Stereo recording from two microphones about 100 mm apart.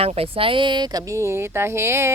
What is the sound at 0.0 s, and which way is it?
Speech, 75° right (ahead or behind).